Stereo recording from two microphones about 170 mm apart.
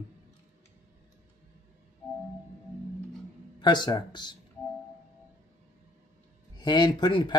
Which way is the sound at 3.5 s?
25° left (ahead or behind).